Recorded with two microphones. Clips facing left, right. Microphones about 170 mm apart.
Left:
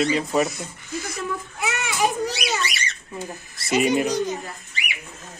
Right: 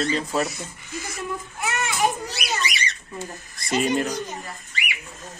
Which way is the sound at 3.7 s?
5° left (ahead or behind).